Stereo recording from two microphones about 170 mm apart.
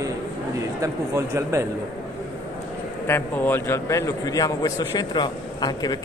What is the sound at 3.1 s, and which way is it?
A man's voice, 10° left (ahead or behind).